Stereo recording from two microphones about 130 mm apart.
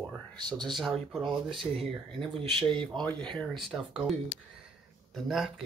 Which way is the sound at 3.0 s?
5° left (ahead or behind).